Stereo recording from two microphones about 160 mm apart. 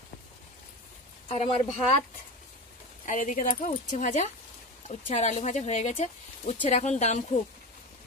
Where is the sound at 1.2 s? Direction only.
40° left (ahead or behind).